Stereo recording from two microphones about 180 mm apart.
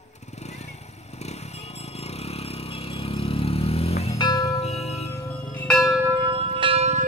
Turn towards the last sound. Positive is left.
turn(degrees=-35)  # may be behind; listen again after turning